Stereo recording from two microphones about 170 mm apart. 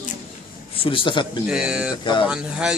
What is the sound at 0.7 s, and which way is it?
Speech, 30° left (ahead or behind).